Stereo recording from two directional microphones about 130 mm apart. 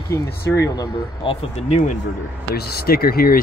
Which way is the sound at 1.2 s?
55° left (ahead or behind).